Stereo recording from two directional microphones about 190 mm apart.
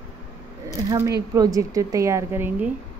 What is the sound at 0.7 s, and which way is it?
A woman's voice, 20° right (ahead or behind).